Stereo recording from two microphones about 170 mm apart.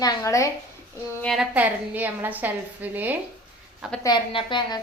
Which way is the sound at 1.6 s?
10° right (ahead or behind).